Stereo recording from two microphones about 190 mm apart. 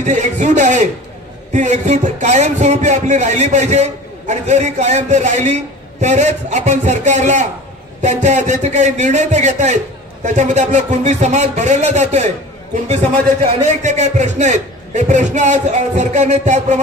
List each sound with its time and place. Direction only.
0.0 s a man's voice: 40° right (ahead or behind)